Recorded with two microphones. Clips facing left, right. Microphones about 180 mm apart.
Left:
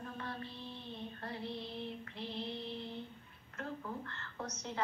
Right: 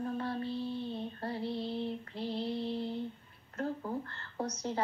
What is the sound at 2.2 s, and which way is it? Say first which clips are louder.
Female singing: right 7 dB; 35° right (ahead or behind).